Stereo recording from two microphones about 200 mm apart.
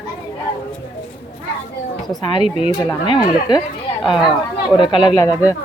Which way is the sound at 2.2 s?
25° left (ahead or behind).